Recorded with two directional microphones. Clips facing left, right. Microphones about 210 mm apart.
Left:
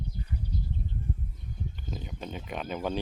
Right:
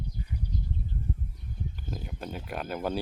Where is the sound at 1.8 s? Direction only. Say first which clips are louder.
Right 1 dB; 5° right (ahead or behind).